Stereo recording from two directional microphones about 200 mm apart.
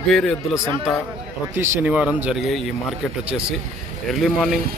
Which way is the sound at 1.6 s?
5° right (ahead or behind).